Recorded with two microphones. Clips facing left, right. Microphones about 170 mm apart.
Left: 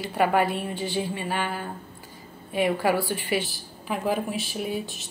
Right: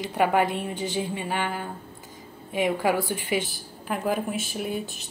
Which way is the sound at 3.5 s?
Centre (ahead or behind).